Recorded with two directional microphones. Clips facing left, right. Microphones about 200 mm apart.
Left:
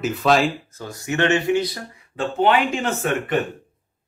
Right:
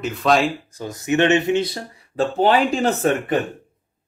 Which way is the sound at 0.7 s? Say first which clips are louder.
Right 5 dB; 15° right (ahead or behind).